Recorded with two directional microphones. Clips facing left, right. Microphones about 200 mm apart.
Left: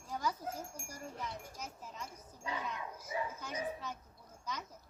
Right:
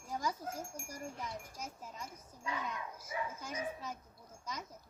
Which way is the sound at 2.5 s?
30° left (ahead or behind).